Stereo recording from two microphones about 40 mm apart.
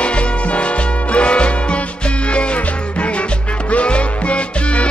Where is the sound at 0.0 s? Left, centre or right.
Left.